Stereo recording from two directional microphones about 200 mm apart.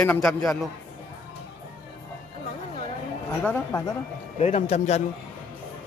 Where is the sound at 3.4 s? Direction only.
10° left (ahead or behind).